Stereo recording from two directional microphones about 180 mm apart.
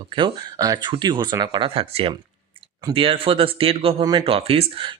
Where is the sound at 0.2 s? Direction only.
25° right (ahead or behind).